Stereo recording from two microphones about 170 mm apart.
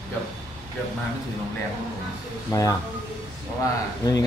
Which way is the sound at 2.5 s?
20° left (ahead or behind).